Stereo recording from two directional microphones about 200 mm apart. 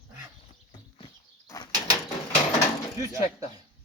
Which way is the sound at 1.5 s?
15° left (ahead or behind).